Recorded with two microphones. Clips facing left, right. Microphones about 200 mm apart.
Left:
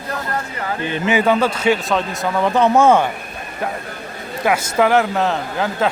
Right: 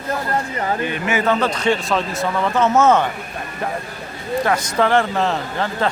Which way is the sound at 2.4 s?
15° left (ahead or behind).